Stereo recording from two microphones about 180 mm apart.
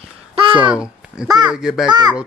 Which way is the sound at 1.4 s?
5° right (ahead or behind).